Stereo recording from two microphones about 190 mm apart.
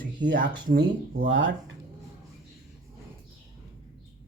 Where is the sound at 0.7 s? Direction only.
50° right (ahead or behind).